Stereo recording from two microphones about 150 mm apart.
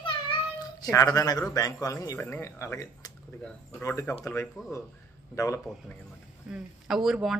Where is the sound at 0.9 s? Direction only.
25° left (ahead or behind).